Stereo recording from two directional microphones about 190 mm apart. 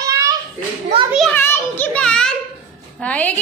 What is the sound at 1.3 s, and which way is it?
A child's voice, 10° left (ahead or behind).